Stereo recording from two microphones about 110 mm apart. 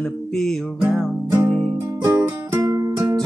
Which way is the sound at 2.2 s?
30° right (ahead or behind).